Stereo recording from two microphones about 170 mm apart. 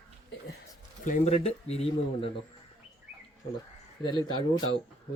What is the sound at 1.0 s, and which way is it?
A man's voice, 45° left (ahead or behind).